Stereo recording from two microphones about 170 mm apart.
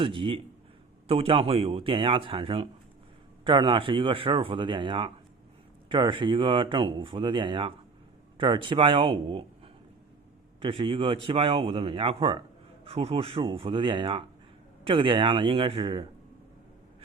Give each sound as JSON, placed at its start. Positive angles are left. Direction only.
{"t": 0.0, "sound": "speech", "side_deg": -30}
{"t": 10.6, "sound": "speech", "side_deg": -30}